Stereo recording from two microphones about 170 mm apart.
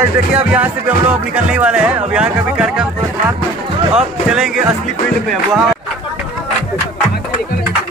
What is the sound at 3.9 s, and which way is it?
Speech, 5° right (ahead or behind).